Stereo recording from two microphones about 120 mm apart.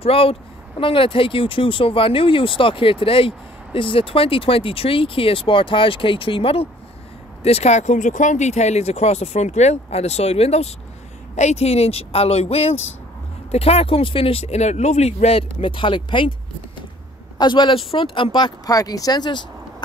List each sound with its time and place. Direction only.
0.0 s speech: 55° left (ahead or behind)
7.4 s speech: 65° left (ahead or behind); by 16.3 s 45° left (ahead or behind)
17.4 s speech: 40° left (ahead or behind)